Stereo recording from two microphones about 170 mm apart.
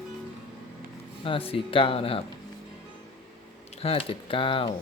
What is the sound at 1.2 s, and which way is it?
Speech, 35° left (ahead or behind).